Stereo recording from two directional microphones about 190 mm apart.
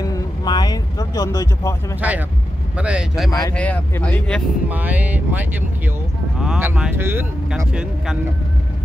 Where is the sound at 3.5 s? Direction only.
5° left (ahead or behind).